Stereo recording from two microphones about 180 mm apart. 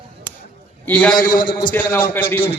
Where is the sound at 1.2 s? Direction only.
50° left (ahead or behind).